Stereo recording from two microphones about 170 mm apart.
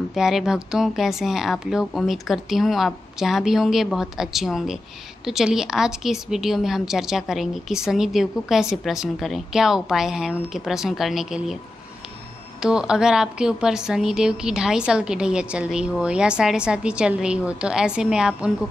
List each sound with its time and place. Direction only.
0.1 s a woman's voice: centre (ahead or behind)
12.6 s a woman's voice: 5° right (ahead or behind)